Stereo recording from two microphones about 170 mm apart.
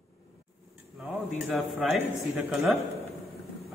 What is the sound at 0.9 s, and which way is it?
A man's voice, 5° right (ahead or behind).